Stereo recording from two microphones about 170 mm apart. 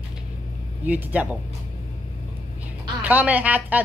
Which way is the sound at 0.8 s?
10° right (ahead or behind).